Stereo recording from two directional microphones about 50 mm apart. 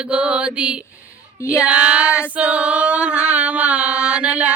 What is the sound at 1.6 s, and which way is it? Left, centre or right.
Female singing, right.